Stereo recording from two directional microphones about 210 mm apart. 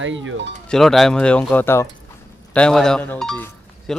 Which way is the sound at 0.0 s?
65° right (ahead or behind).